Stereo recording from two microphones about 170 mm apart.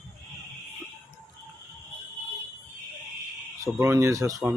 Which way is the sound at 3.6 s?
15° right (ahead or behind).